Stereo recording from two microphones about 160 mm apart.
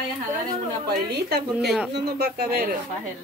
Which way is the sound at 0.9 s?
85° right.